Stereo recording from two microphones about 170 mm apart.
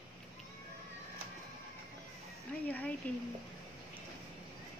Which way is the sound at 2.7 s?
10° left (ahead or behind).